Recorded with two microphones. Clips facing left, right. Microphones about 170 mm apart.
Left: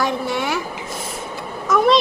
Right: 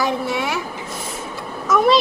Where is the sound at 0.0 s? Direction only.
Centre (ahead or behind).